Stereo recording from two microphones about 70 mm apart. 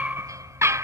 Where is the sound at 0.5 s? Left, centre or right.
Right.